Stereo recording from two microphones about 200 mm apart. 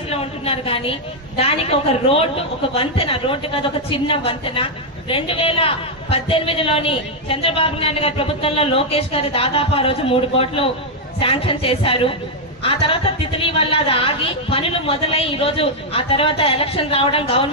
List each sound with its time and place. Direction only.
0.1 s a woman's voice: 30° left (ahead or behind)